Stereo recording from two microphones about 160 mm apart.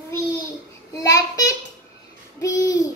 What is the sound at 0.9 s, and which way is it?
Speech, 20° left (ahead or behind).